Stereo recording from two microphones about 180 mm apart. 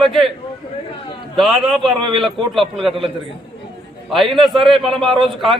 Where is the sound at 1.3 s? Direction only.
Centre (ahead or behind).